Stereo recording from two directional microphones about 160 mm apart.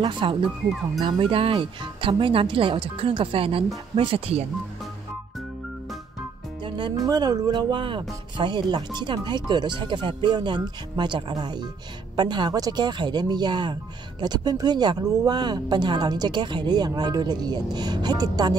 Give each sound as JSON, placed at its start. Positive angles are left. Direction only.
{"t": 0.0, "sound": "speech", "side_deg": -30}
{"t": 6.6, "sound": "speech", "side_deg": -30}